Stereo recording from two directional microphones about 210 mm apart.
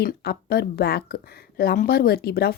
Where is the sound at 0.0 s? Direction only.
50° left (ahead or behind).